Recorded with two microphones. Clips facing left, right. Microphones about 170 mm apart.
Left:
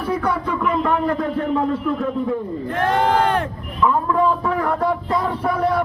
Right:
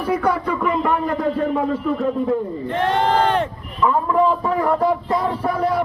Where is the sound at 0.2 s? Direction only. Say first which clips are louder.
Right 2 dB; centre (ahead or behind).